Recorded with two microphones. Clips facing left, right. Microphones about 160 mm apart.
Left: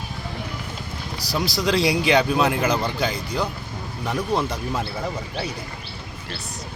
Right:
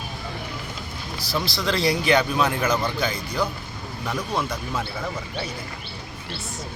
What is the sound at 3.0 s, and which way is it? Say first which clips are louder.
Speech: left 1 dB; 35° left (ahead or behind).